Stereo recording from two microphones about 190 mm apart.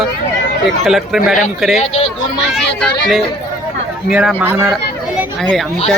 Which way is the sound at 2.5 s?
Centre (ahead or behind).